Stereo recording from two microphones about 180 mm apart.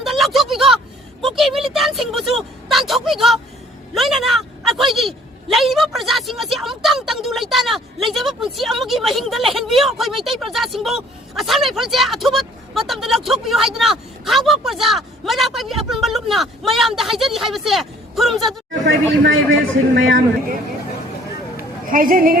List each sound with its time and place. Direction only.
0.0 s a sound: centre (ahead or behind)
1.2 s speech: centre (ahead or behind)
18.9 s speech: 90° right
21.8 s a woman's voice: 50° right (ahead or behind)